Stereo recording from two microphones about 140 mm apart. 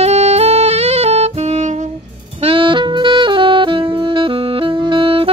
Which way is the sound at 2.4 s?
40° right (ahead or behind).